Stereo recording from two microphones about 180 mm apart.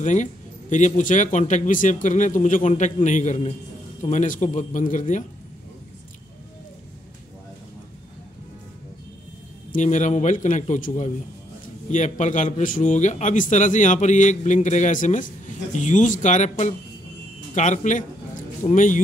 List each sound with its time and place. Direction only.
0.0 s a man's voice: 45° left (ahead or behind)
9.7 s a man's voice: 45° left (ahead or behind)